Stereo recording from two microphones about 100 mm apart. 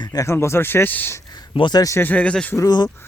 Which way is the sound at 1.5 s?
55° left (ahead or behind).